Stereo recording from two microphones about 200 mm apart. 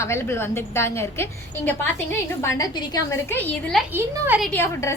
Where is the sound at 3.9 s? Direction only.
5° right (ahead or behind).